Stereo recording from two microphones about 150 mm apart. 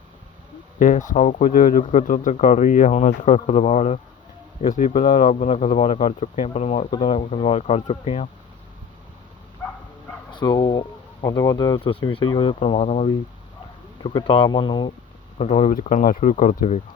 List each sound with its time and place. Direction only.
0.8 s speech: 55° left (ahead or behind)
9.6 s a sound: 10° left (ahead or behind)
10.3 s speech: 30° left (ahead or behind)
14.0 s speech: 35° left (ahead or behind)
15.4 s speech: 50° left (ahead or behind)